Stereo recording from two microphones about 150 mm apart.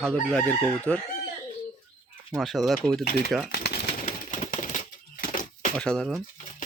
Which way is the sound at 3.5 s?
90° left.